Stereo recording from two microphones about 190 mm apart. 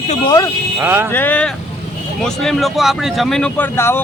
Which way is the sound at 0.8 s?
10° right (ahead or behind).